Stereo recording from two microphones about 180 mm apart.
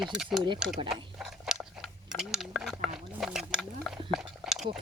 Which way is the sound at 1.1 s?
Centre (ahead or behind).